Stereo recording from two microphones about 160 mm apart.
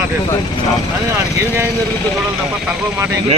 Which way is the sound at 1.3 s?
15° right (ahead or behind).